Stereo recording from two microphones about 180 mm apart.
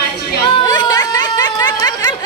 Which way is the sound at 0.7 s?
20° left (ahead or behind).